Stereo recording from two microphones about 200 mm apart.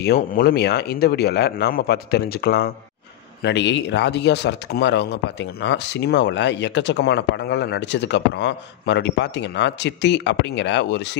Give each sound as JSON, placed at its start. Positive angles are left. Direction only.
{"t": 0.0, "sound": "speech", "side_deg": 50}